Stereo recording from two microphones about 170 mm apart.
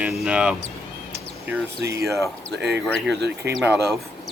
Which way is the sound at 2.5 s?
85° right.